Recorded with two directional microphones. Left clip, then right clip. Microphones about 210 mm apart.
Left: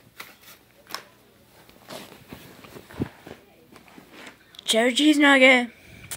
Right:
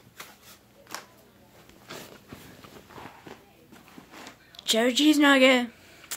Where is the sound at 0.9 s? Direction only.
25° left (ahead or behind).